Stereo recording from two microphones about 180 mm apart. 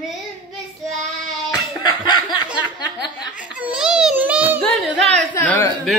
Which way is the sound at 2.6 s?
25° left (ahead or behind).